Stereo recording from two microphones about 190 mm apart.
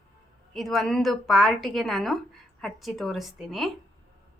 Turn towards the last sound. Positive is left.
turn(degrees=0)  # may be behind; listen again after turning